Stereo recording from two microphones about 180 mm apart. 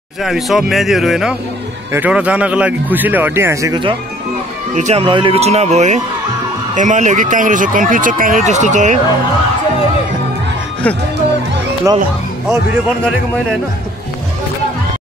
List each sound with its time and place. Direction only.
0.2 s speech: centre (ahead or behind); by 3.9 s 20° right (ahead or behind)
4.7 s speech: 35° right (ahead or behind)
11.9 s speech: 15° right (ahead or behind)